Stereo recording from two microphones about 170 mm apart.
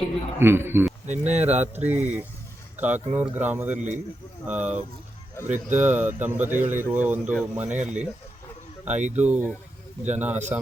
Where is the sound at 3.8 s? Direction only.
45° right (ahead or behind).